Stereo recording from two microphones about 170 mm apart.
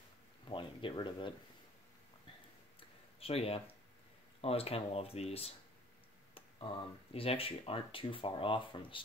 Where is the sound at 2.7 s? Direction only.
35° left (ahead or behind).